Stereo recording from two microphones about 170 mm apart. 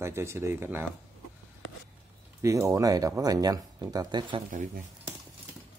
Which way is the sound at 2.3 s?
20° right (ahead or behind).